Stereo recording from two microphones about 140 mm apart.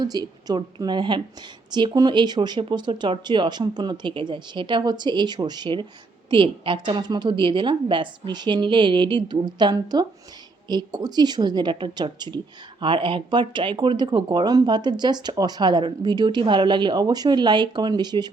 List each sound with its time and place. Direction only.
0.0 s a woman's voice: 30° right (ahead or behind)